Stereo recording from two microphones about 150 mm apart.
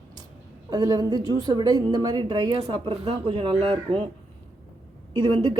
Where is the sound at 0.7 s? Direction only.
25° right (ahead or behind).